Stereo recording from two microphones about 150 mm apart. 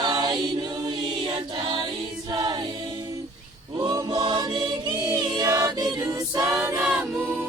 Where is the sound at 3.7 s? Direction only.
25° right (ahead or behind).